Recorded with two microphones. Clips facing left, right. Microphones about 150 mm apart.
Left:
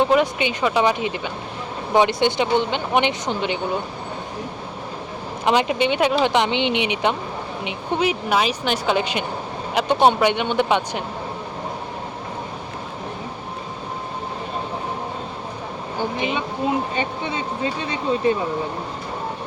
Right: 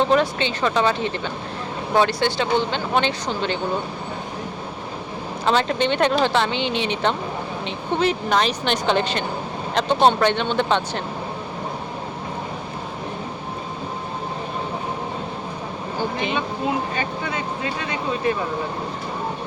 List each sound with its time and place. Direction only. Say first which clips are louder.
0.0 s speech: left 1 dB; 10° left (ahead or behind)
5.5 s speech: left 1 dB; 15° left (ahead or behind)
16.9 s speech: left 1 dB; 25° left (ahead or behind)